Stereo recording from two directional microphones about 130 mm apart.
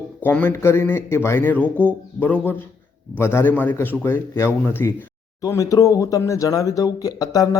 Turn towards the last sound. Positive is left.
turn(degrees=30)  # may be behind; listen again after turning